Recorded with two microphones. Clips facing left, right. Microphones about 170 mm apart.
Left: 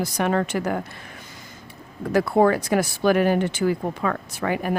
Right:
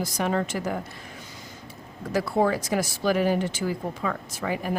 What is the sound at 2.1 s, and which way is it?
Speech, 55° left (ahead or behind).